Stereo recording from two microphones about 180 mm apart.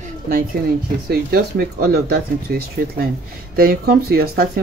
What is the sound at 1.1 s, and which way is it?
Speech, 60° right (ahead or behind).